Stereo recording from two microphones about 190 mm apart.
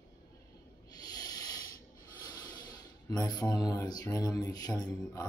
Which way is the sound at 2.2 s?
20° left (ahead or behind).